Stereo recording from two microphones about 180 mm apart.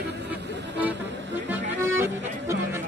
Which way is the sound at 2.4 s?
15° right (ahead or behind).